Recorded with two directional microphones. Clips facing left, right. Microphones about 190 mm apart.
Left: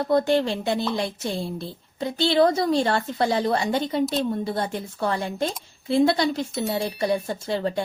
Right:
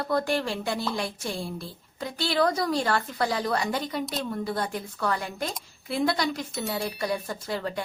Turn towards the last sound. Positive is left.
turn(degrees=25)  # may be behind; listen again after turning